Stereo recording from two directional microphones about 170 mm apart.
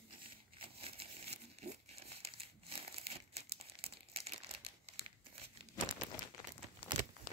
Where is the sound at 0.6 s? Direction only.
35° right (ahead or behind).